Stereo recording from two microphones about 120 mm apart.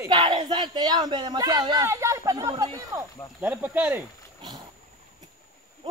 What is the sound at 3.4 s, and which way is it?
Speech, 15° right (ahead or behind).